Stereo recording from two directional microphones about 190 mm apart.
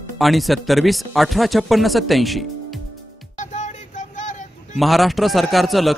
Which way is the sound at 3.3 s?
40° left (ahead or behind).